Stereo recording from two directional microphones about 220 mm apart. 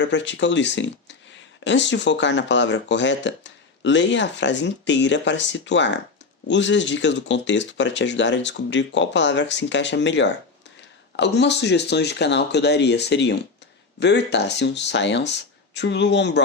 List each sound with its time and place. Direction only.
0.0 s speech: 55° left (ahead or behind)